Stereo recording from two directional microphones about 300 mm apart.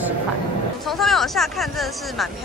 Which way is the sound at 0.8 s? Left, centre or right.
Centre.